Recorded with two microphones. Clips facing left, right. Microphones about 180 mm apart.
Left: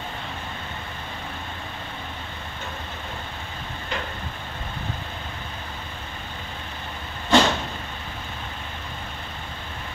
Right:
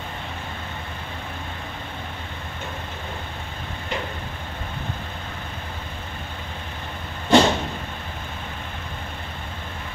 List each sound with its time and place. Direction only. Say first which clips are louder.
7.2 s vehicle: right 3 dB; 25° right (ahead or behind)